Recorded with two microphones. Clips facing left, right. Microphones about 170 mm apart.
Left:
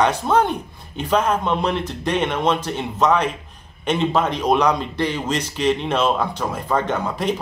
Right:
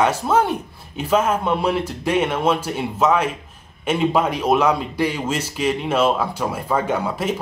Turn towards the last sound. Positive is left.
turn(degrees=-5)  # may be behind; listen again after turning